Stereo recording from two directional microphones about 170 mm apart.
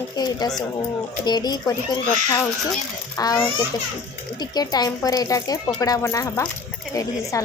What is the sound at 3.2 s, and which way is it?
Speech, 20° left (ahead or behind).